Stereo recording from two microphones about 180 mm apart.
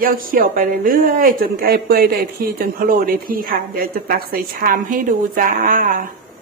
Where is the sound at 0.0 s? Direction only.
50° right (ahead or behind).